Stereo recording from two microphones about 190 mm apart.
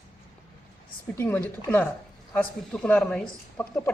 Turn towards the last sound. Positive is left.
turn(degrees=5)  # may be behind; listen again after turning